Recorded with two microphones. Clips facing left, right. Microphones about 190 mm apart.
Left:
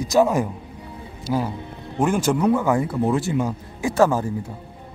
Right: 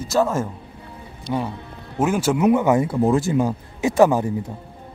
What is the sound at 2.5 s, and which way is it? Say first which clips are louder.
Speech: right 3 dB; 20° right (ahead or behind).